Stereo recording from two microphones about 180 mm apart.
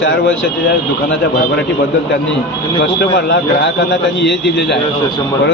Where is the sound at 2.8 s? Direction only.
65° left (ahead or behind).